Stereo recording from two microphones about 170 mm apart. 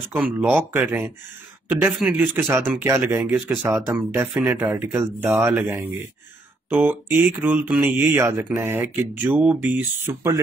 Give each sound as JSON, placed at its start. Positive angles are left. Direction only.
{"t": 0.1, "sound": "speech", "side_deg": -10}
{"t": 3.3, "sound": "speech", "side_deg": 0}